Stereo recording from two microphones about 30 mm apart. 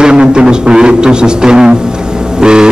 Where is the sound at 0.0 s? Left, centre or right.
Right.